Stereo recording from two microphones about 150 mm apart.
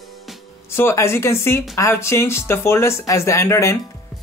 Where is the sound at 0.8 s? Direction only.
15° left (ahead or behind).